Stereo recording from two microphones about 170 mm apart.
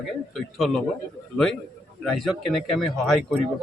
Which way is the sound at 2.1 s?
Centre (ahead or behind).